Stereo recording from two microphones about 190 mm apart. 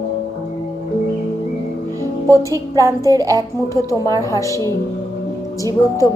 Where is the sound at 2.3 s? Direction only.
15° left (ahead or behind).